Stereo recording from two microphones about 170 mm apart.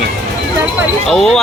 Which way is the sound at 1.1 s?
5° left (ahead or behind).